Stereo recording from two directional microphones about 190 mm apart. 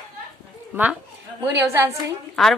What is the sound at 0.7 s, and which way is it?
A woman's voice, 10° right (ahead or behind).